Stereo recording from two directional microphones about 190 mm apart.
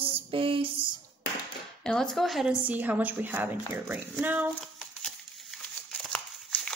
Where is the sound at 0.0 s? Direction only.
30° right (ahead or behind).